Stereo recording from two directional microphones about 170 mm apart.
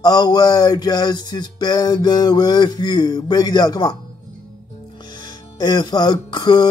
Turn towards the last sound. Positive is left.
turn(degrees=25)  # may be behind; listen again after turning